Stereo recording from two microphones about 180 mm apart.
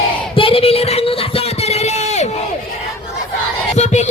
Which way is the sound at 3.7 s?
40° left (ahead or behind).